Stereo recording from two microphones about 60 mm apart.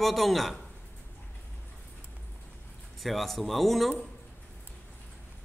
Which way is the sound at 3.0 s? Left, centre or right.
Centre.